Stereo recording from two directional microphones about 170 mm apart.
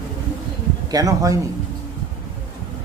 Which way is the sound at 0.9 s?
20° right (ahead or behind).